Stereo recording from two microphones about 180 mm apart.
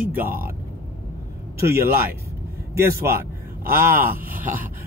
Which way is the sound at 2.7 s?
15° right (ahead or behind).